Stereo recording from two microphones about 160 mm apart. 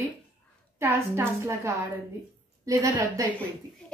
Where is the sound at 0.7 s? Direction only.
15° right (ahead or behind).